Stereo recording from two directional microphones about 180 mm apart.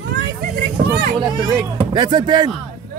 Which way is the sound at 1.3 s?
25° right (ahead or behind).